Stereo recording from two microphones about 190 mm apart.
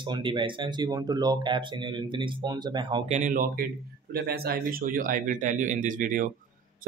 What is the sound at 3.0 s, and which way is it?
Speech, 40° right (ahead or behind).